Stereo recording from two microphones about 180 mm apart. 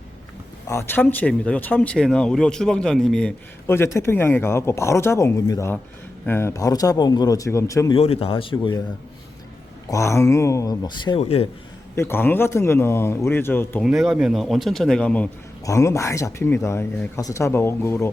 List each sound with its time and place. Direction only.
0.7 s speech: 15° left (ahead or behind)
7.9 s speech: 35° left (ahead or behind)
9.9 s speech: 15° left (ahead or behind); by 11.4 s 35° left (ahead or behind)
11.9 s speech: 15° left (ahead or behind)
13.8 s speech: centre (ahead or behind); by 18.1 s 15° left (ahead or behind)